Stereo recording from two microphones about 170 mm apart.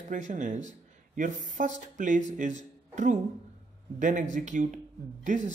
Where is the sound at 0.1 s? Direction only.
45° right (ahead or behind).